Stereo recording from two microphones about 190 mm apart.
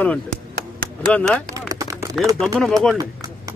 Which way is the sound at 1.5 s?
20° right (ahead or behind).